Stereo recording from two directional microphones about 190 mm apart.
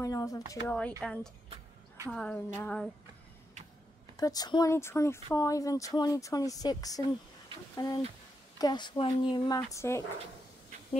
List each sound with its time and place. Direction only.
0.0 s speech: 20° left (ahead or behind)
1.0 s a woman's voice: 5° left (ahead or behind)
4.2 s speech: 20° left (ahead or behind)